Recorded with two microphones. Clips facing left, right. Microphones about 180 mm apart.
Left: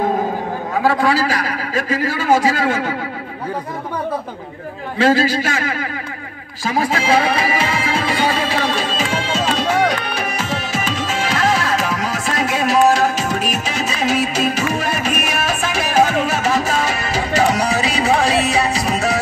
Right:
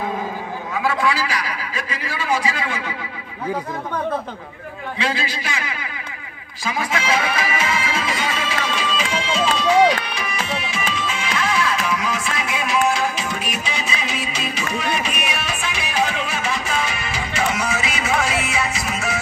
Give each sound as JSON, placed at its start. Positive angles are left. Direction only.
{"t": 0.7, "sound": "a man's voice", "side_deg": 40}
{"t": 4.9, "sound": "a man's voice", "side_deg": 40}
{"t": 6.6, "sound": "music", "side_deg": 35}